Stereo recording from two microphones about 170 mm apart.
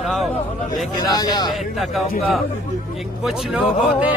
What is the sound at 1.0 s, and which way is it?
Speech, 25° left (ahead or behind).